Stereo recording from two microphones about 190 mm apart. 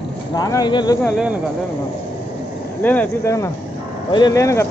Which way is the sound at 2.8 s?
10° left (ahead or behind).